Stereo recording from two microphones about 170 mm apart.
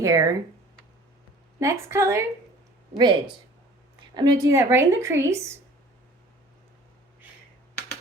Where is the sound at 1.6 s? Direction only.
15° right (ahead or behind).